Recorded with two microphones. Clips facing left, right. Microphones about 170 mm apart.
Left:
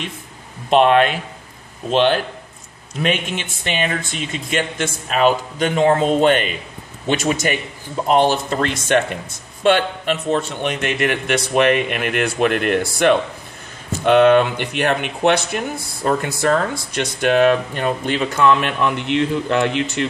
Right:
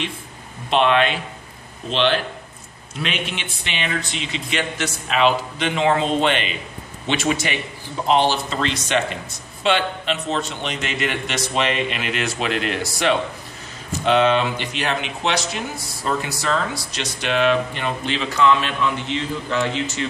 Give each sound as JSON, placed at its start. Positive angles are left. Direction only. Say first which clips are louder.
{"t": 0.7, "sound": "speech", "louder": "left 4 dB", "side_deg": 45}